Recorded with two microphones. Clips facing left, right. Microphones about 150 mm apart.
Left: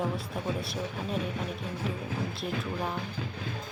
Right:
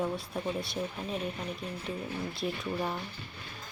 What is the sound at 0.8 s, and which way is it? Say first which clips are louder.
Speech: left 2 dB; 90° left.